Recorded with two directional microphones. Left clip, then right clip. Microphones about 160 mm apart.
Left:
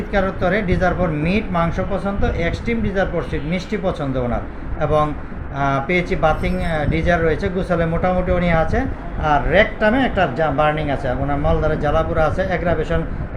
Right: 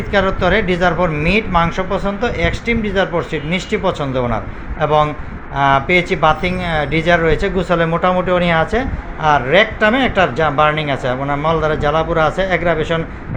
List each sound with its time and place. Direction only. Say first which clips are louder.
0.1 s speech: right 5 dB; 20° right (ahead or behind)